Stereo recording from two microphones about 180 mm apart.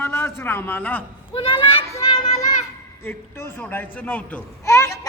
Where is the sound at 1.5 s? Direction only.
30° left (ahead or behind).